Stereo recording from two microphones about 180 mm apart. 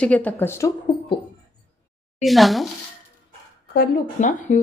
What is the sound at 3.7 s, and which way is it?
Speech, 55° left (ahead or behind).